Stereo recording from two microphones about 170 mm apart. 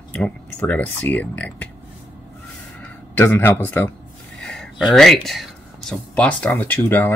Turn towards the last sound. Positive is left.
turn(degrees=10)  # may be behind; listen again after turning